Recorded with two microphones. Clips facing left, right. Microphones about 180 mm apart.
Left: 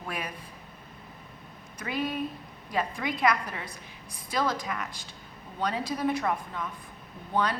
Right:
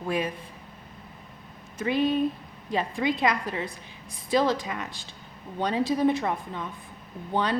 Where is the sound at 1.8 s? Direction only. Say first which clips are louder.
Right 7 dB; 25° right (ahead or behind).